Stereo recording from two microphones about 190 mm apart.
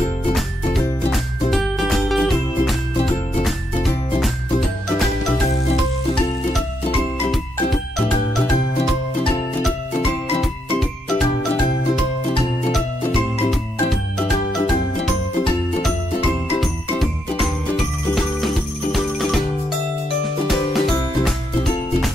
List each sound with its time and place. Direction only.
1.5 s music: centre (ahead or behind)
3.0 s music: 30° left (ahead or behind)
3.4 s music: centre (ahead or behind)
10.8 s music: centre (ahead or behind)
17.0 s jingle bell: centre (ahead or behind)
20.4 s music: centre (ahead or behind)